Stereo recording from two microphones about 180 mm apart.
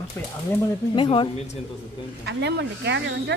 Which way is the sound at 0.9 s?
25° left (ahead or behind).